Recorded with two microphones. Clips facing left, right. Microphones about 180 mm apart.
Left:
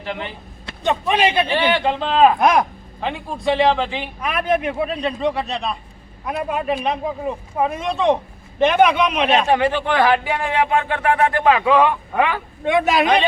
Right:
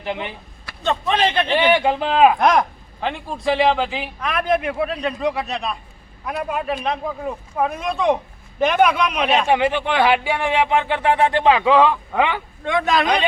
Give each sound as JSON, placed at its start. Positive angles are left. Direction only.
{"t": 0.0, "sound": "speech", "side_deg": -15}
{"t": 0.6, "sound": "speech", "side_deg": 20}
{"t": 1.5, "sound": "speech", "side_deg": -15}
{"t": 2.4, "sound": "speech", "side_deg": 5}
{"t": 4.2, "sound": "speech", "side_deg": 5}
{"t": 9.5, "sound": "speech", "side_deg": -15}
{"t": 12.6, "sound": "a man's voice", "side_deg": 15}